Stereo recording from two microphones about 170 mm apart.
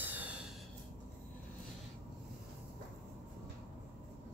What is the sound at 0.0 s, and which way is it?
Snort, 10° right (ahead or behind).